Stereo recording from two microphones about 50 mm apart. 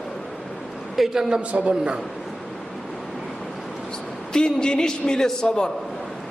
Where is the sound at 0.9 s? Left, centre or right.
Centre.